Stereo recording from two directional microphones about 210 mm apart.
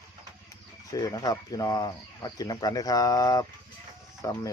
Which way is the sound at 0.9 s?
15° left (ahead or behind).